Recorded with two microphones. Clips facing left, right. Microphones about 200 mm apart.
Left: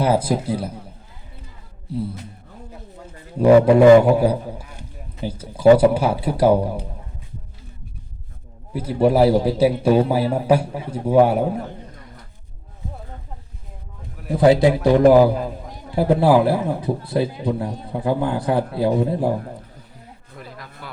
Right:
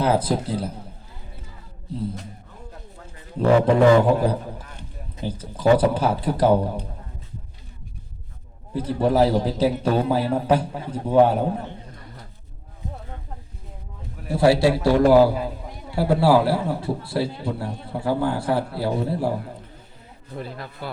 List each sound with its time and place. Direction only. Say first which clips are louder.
0.0 s a man's voice: left 2 dB; 10° left (ahead or behind)
3.3 s a man's voice: left 5 dB; 10° left (ahead or behind)
8.7 s a man's voice: left 3 dB; 10° left (ahead or behind)
14.3 s a man's voice: left 3 dB; 20° left (ahead or behind)
20.3 s a sound: right 6 dB; 30° right (ahead or behind)